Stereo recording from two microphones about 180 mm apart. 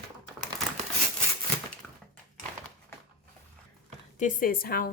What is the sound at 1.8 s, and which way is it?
Dog, 5° left (ahead or behind).